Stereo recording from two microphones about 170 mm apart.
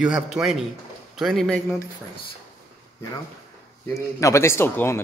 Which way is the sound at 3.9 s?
15° left (ahead or behind).